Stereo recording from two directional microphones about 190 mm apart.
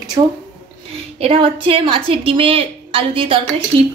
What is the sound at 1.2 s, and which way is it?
A woman's voice, 30° right (ahead or behind).